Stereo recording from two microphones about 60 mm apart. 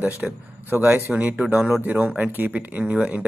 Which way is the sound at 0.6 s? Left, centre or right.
Right.